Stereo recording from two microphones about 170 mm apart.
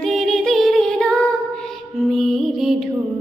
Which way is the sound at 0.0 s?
Centre (ahead or behind).